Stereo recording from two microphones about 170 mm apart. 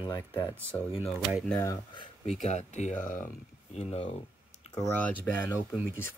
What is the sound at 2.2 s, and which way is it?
Speech, 40° left (ahead or behind).